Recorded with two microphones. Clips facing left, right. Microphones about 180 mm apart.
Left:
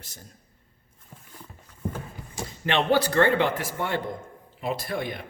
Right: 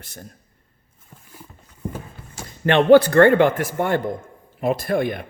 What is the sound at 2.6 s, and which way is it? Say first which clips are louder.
A man's voice: right 10 dB; 55° right (ahead or behind).